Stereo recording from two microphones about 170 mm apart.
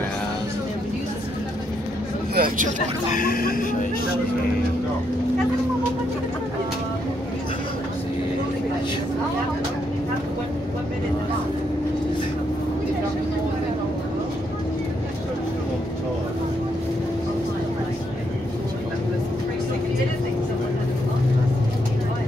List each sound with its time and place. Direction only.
2.3 s speech: 55° right (ahead or behind)
3.1 s speech: 55° left (ahead or behind)